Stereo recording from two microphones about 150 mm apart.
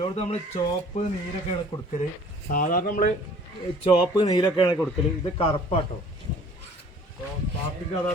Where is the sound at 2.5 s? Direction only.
70° left (ahead or behind).